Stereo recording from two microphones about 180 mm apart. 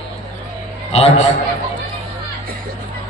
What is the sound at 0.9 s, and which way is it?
Speech, 35° left (ahead or behind).